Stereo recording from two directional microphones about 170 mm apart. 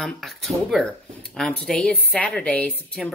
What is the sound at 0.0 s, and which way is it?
A woman's voice, centre (ahead or behind).